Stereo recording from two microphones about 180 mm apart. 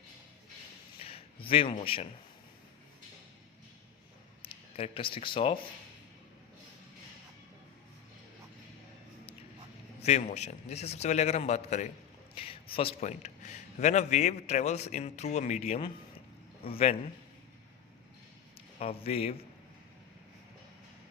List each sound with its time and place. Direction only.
0.9 s a sound: 30° left (ahead or behind)
4.4 s speech: 30° left (ahead or behind)
10.0 s a man's voice: 40° left (ahead or behind)
18.8 s a man's voice: 35° left (ahead or behind)